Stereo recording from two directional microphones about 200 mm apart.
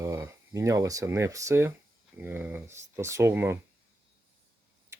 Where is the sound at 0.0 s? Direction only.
15° right (ahead or behind).